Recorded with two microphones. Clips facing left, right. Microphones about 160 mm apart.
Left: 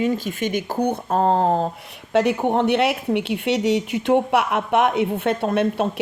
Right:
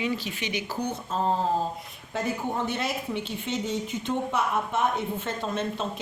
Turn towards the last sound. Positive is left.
turn(degrees=60)  # may be behind; listen again after turning